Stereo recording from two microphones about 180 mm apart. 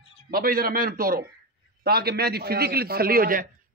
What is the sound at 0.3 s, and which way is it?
A man's voice, 55° right (ahead or behind).